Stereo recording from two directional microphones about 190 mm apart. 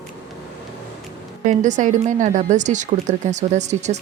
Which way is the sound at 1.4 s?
40° right (ahead or behind).